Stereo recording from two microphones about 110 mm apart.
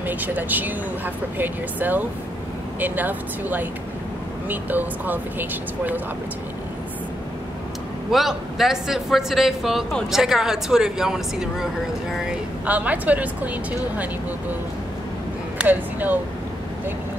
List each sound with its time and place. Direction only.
0.0 s speech: 15° right (ahead or behind)
8.1 s a man's voice: centre (ahead or behind)
15.5 s speech: 15° right (ahead or behind)